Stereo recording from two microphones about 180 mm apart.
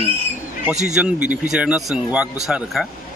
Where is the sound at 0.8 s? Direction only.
5° right (ahead or behind).